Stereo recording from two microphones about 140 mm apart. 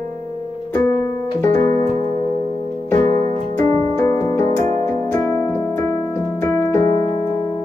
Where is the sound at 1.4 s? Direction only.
20° left (ahead or behind).